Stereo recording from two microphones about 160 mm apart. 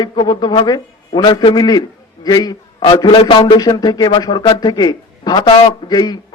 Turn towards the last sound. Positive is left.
turn(degrees=25)  # may be behind; listen again after turning